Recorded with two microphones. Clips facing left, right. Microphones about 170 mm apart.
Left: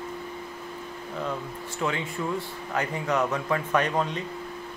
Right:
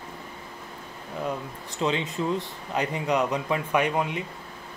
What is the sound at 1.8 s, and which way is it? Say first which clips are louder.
Speech: right 3 dB; 20° right (ahead or behind).